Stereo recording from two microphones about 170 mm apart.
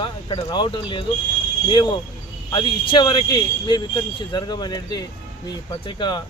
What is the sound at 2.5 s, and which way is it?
Speech, 25° left (ahead or behind).